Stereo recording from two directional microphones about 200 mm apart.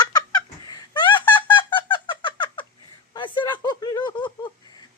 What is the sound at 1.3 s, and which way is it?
Fowl, 25° left (ahead or behind).